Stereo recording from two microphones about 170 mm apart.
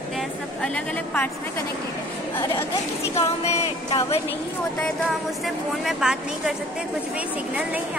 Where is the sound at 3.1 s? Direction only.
40° left (ahead or behind).